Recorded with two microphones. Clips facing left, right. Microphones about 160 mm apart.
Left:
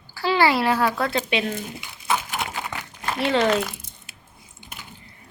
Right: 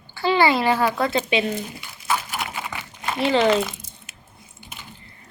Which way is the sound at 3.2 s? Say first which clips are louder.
Right 2 dB; centre (ahead or behind).